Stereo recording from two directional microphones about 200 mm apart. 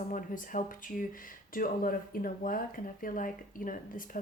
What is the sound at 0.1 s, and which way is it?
Speech, 40° left (ahead or behind).